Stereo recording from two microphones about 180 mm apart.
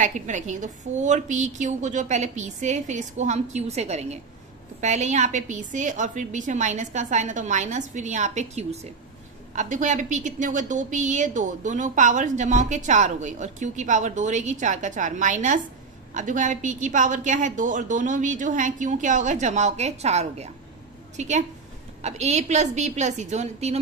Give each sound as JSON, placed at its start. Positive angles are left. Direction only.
{"t": 0.0, "sound": "a woman's voice", "side_deg": -45}